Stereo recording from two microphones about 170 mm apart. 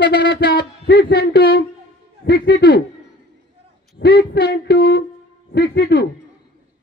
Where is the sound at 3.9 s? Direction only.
70° left (ahead or behind).